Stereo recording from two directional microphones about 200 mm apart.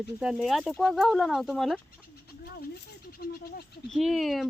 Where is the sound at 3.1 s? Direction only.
50° left (ahead or behind).